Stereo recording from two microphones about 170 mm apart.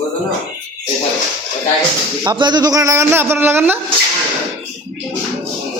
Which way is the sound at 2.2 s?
25° right (ahead or behind).